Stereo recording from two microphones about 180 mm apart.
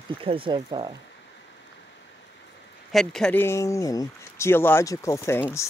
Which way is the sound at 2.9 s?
Centre (ahead or behind).